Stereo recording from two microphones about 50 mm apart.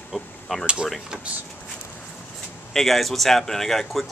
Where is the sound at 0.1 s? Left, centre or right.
Centre.